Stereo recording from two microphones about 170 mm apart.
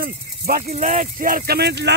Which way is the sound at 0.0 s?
60° right (ahead or behind).